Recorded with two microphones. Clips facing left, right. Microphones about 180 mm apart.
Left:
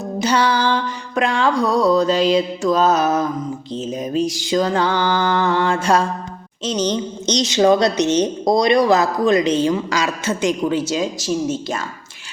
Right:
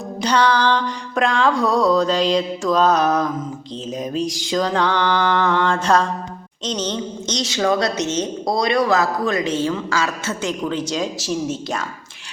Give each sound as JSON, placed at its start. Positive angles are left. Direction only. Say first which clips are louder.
{"t": 0.2, "sound": "music", "louder": "even", "side_deg": 5}
{"t": 6.7, "sound": "a woman's voice", "louder": "left 4 dB", "side_deg": 10}